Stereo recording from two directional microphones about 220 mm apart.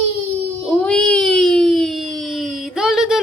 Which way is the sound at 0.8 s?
5° left (ahead or behind).